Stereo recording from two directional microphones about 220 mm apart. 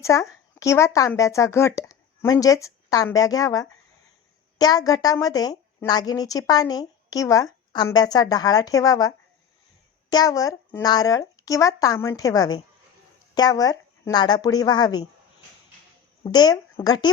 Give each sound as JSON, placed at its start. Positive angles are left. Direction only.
{"t": 0.0, "sound": "a woman's voice", "side_deg": 15}
{"t": 16.2, "sound": "a woman's voice", "side_deg": 20}